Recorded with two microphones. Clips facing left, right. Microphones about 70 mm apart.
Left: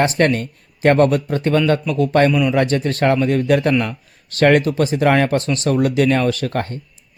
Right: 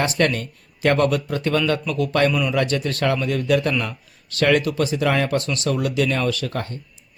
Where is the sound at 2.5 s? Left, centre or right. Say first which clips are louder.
Left 4 dB; left.